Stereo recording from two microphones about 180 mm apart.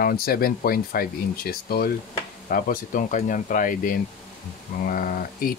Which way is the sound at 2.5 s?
50° left (ahead or behind).